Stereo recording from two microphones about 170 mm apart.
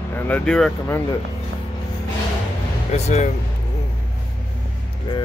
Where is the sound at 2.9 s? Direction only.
45° left (ahead or behind).